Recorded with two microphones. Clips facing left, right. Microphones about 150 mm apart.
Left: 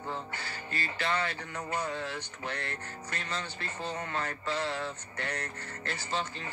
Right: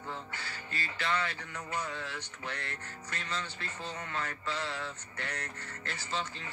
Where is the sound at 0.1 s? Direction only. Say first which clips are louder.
Left 3 dB; 35° left (ahead or behind).